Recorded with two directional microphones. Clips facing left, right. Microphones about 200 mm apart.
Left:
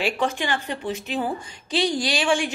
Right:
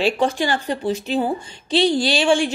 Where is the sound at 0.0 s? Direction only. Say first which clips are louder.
Right 5 dB; 35° right (ahead or behind).